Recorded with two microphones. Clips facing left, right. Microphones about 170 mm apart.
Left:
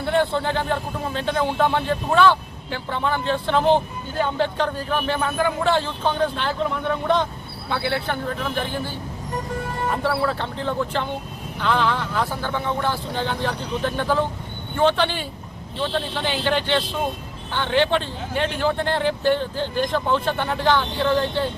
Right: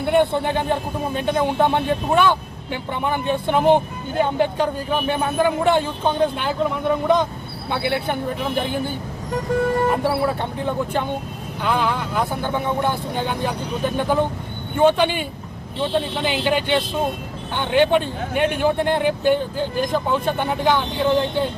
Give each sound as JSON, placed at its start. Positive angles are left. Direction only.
{"t": 0.0, "sound": "speech", "side_deg": -15}
{"t": 10.0, "sound": "speech", "side_deg": -15}